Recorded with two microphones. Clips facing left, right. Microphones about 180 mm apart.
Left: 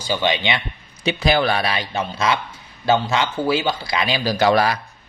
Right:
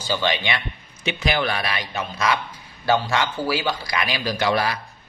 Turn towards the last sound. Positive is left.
turn(degrees=40)  # may be behind; listen again after turning